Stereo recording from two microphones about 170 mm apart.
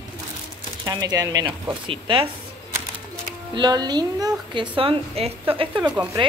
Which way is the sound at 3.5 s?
25° right (ahead or behind).